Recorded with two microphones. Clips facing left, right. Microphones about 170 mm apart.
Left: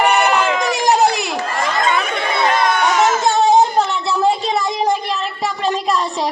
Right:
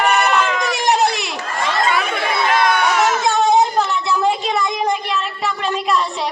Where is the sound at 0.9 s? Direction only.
40° left (ahead or behind).